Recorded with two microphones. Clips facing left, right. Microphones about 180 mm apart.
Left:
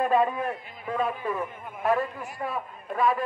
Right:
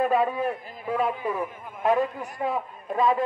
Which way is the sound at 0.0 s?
5° right (ahead or behind).